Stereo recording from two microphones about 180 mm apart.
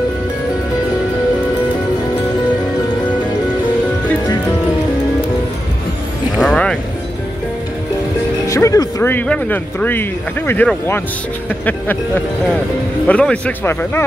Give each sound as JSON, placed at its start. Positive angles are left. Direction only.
{"t": 6.3, "sound": "a sound", "side_deg": 5}
{"t": 8.5, "sound": "speech", "side_deg": 15}
{"t": 13.0, "sound": "speech", "side_deg": 5}